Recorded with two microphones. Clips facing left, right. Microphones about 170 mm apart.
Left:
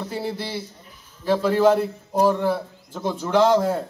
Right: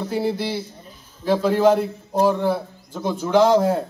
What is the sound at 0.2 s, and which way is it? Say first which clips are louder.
A man's voice: right 5 dB; 10° right (ahead or behind).